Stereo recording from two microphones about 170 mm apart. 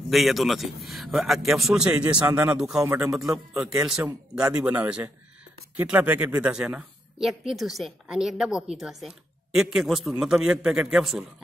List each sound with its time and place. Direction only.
0.1 s speech: centre (ahead or behind)
2.8 s speech: 15° right (ahead or behind)
3.2 s speech: centre (ahead or behind)